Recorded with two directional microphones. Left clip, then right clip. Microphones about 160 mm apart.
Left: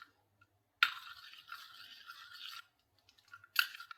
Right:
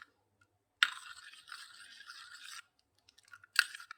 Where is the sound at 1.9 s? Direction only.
40° right (ahead or behind).